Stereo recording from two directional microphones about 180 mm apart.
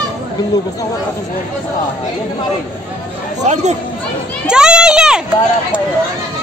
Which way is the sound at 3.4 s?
40° right (ahead or behind).